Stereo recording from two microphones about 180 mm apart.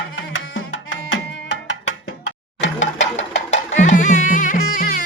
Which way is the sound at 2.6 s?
75° left (ahead or behind).